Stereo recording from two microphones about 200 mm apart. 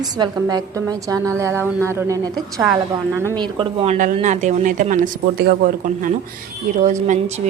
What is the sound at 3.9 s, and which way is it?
Speech, 40° right (ahead or behind).